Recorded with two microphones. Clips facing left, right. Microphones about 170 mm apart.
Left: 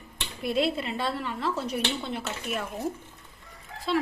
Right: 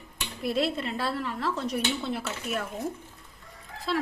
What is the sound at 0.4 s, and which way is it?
A woman's voice, centre (ahead or behind).